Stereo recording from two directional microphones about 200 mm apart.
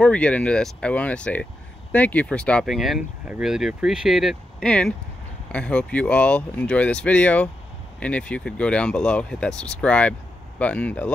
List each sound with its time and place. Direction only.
0.0 s speech: 5° left (ahead or behind)